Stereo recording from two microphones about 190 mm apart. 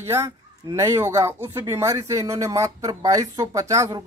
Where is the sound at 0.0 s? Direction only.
15° right (ahead or behind).